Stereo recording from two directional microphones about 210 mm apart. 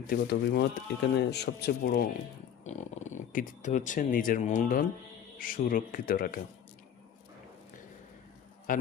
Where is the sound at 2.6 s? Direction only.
35° left (ahead or behind).